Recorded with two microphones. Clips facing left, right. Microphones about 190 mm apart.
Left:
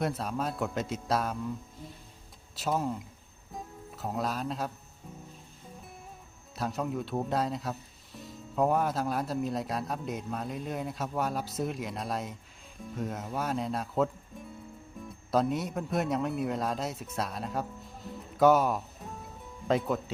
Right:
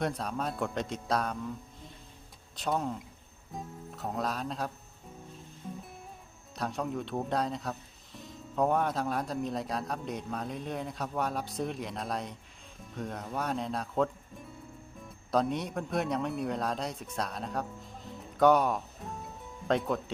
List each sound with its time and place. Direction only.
0.0 s speech: centre (ahead or behind)
2.6 s speech: 5° left (ahead or behind)
6.6 s speech: centre (ahead or behind)
19.0 s music: centre (ahead or behind)
19.6 s speech: centre (ahead or behind)